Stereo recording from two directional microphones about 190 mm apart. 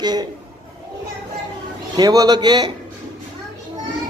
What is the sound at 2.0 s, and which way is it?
Speech, 20° right (ahead or behind).